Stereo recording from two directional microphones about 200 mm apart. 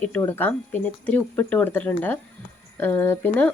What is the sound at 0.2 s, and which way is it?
A woman's voice, 10° left (ahead or behind).